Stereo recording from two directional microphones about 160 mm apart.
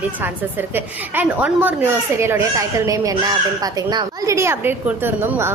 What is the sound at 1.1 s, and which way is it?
A woman's voice, 10° right (ahead or behind).